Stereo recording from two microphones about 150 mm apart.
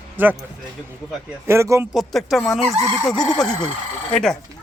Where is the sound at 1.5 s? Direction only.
20° right (ahead or behind).